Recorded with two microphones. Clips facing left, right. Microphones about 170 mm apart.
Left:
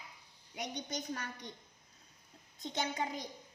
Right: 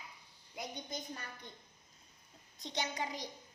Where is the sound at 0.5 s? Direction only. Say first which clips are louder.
Left 3 dB; 80° left.